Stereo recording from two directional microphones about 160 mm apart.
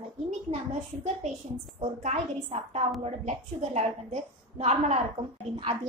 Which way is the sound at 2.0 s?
45° right (ahead or behind).